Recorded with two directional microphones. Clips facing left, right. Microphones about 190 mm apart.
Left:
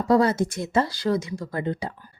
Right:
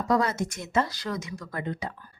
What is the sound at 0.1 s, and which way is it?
Speech, 30° left (ahead or behind).